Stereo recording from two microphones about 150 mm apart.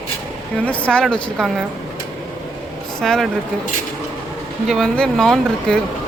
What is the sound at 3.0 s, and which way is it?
Speech, 5° left (ahead or behind).